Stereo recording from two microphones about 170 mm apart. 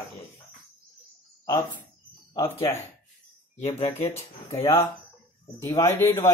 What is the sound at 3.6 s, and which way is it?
Speech, 35° left (ahead or behind).